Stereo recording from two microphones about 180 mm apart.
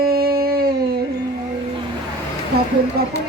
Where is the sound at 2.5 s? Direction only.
60° right (ahead or behind).